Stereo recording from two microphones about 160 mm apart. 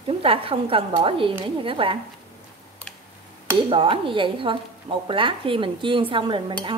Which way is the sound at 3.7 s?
30° right (ahead or behind).